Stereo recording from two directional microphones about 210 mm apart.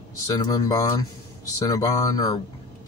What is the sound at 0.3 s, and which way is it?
Speech, 15° left (ahead or behind).